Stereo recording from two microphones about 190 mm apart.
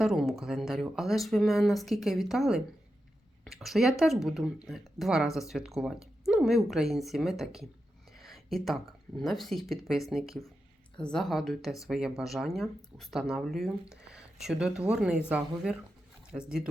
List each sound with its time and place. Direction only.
0.0 s speech: centre (ahead or behind)